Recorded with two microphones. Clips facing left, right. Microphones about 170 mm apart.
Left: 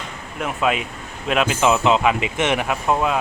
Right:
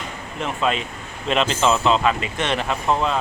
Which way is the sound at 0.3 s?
5° left (ahead or behind).